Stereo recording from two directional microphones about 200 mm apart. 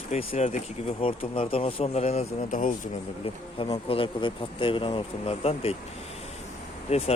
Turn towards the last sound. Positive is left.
turn(degrees=30)  # may be behind; listen again after turning